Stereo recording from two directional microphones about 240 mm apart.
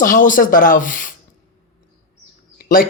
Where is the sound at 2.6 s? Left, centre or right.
Left.